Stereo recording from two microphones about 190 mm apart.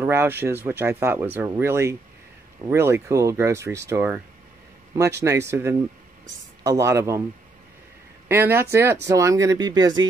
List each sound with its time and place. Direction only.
0.0 s speech: 15° right (ahead or behind)
8.3 s speech: 10° right (ahead or behind)